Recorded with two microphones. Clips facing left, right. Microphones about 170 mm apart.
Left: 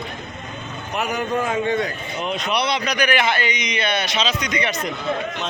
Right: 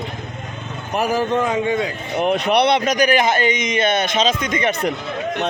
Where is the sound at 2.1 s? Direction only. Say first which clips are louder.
Right 10 dB; 60° right (ahead or behind).